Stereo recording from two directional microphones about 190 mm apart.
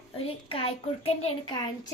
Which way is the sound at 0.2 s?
30° left (ahead or behind).